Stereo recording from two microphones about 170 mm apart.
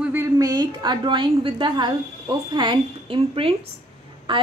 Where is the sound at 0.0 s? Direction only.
15° right (ahead or behind).